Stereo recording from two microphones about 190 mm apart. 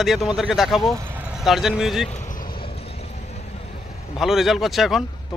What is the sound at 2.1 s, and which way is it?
Vehicle, 40° left (ahead or behind).